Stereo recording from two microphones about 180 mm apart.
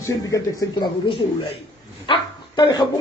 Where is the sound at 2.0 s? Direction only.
25° left (ahead or behind).